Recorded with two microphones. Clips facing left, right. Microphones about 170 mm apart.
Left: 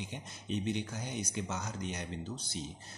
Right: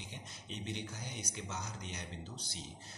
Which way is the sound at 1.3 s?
50° left (ahead or behind).